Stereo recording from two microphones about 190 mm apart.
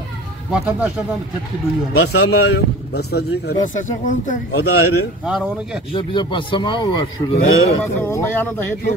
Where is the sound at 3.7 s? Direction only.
40° left (ahead or behind).